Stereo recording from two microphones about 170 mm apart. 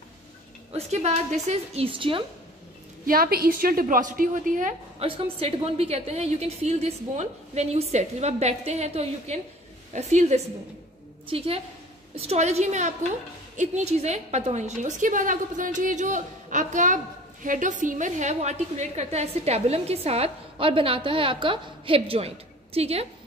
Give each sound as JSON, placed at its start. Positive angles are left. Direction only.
{"t": 0.7, "sound": "a woman's voice", "side_deg": -40}
{"t": 3.1, "sound": "a woman's voice", "side_deg": -60}
{"t": 5.0, "sound": "a woman's voice", "side_deg": -35}